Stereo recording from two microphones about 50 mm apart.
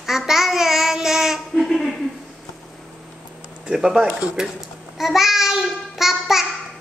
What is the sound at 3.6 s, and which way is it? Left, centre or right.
Babbling, centre.